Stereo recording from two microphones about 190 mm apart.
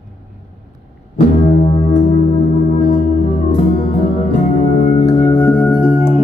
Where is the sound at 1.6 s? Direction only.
35° left (ahead or behind).